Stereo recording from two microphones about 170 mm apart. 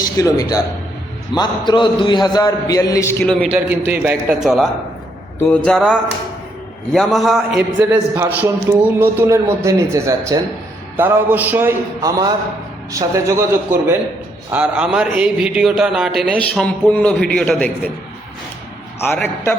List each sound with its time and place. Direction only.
0.2 s a man's voice: 20° left (ahead or behind)
3.5 s a man's voice: 10° right (ahead or behind)
8.1 s a man's voice: 15° right (ahead or behind)
16.6 s speech: 10° left (ahead or behind)
19.0 s speech: 10° left (ahead or behind)